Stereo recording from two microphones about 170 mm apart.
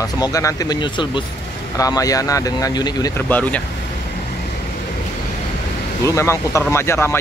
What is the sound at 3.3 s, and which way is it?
Speech, 10° left (ahead or behind).